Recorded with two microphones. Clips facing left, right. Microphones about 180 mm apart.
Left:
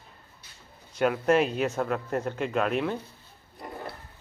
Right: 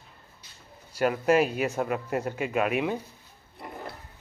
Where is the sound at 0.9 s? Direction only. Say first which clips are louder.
Even; 5° right (ahead or behind).